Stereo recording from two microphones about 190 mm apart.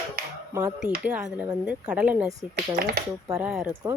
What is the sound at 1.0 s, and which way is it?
Speech, 5° right (ahead or behind).